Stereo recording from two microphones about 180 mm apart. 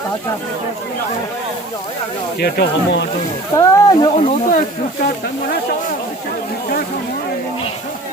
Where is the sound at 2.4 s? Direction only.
65° left (ahead or behind).